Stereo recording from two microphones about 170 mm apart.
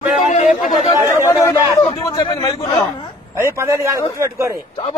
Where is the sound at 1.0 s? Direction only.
15° left (ahead or behind).